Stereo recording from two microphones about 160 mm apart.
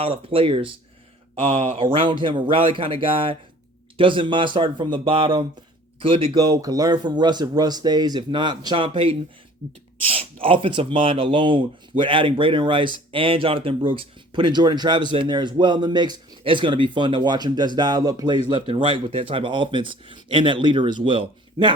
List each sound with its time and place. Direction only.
0.0 s speech: 35° right (ahead or behind)